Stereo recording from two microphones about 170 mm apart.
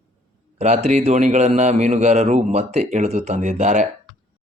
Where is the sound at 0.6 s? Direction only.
40° right (ahead or behind).